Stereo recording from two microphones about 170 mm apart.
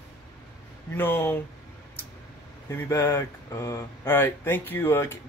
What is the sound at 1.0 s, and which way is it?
Speech, 10° left (ahead or behind).